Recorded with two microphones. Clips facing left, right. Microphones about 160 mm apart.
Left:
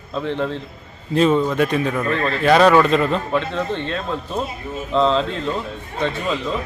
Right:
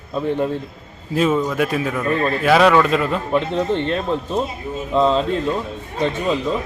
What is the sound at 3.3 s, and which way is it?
Speech, 20° right (ahead or behind).